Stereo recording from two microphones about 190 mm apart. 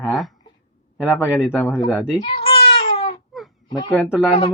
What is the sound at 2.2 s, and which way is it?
Baby cry, 30° left (ahead or behind).